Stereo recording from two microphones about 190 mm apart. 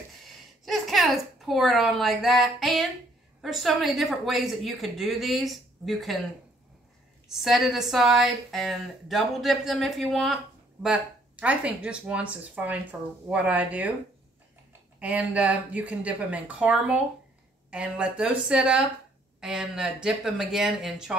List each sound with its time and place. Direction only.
0.2 s a sound: centre (ahead or behind)
3.3 s a woman's voice: centre (ahead or behind)
7.3 s a woman's voice: centre (ahead or behind)
15.0 s a woman's voice: 5° right (ahead or behind)